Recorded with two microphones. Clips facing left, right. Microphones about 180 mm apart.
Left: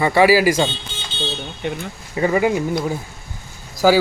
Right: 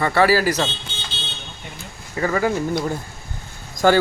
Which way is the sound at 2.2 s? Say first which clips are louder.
Left 3 dB; 15° left (ahead or behind).